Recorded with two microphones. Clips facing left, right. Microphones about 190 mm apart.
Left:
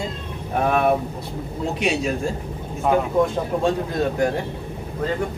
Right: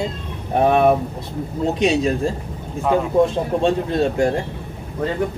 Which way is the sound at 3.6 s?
25° right (ahead or behind).